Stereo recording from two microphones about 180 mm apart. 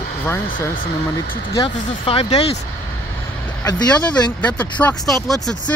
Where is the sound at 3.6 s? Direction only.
5° left (ahead or behind).